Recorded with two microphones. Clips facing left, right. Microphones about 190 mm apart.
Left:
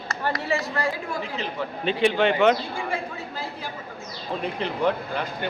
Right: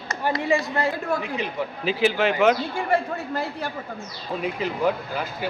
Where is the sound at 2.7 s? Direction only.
60° right (ahead or behind).